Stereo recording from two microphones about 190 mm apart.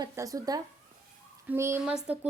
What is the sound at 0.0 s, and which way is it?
A woman's voice, 20° right (ahead or behind).